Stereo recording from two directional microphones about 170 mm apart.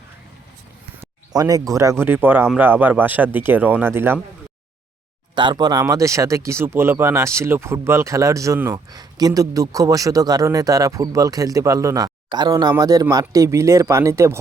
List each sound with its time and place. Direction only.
1.3 s speech: 20° right (ahead or behind)
5.3 s speech: 25° right (ahead or behind); by 8.8 s 10° right (ahead or behind)
8.9 s speech: 20° right (ahead or behind)